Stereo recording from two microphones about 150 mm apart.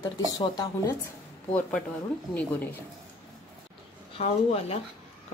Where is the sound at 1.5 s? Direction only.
5° left (ahead or behind).